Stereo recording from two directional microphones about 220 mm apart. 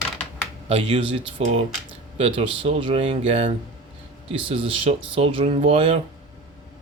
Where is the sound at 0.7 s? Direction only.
25° right (ahead or behind).